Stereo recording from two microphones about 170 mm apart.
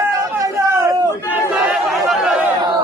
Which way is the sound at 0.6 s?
20° right (ahead or behind).